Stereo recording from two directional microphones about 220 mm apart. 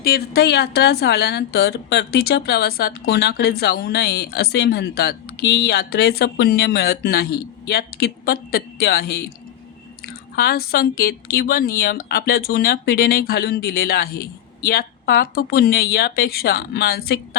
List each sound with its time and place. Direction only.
0.0 s a woman's voice: 45° left (ahead or behind)